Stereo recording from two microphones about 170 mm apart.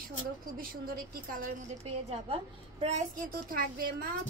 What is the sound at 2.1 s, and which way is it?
A woman's voice, 35° right (ahead or behind).